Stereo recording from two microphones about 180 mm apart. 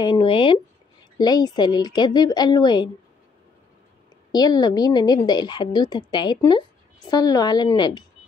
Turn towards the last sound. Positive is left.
turn(degrees=25)  # may be behind; listen again after turning